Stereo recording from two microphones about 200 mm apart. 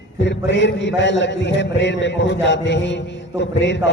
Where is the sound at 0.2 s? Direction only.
60° left (ahead or behind).